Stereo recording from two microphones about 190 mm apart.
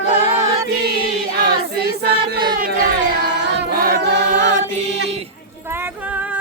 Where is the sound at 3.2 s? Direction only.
65° right (ahead or behind).